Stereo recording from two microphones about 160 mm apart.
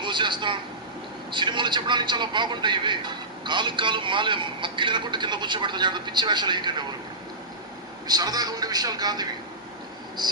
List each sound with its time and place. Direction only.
0.0 s a man's voice: 30° right (ahead or behind)
8.0 s a man's voice: 25° right (ahead or behind)